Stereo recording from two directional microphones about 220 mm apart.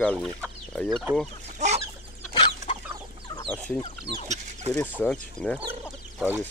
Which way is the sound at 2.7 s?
25° left (ahead or behind).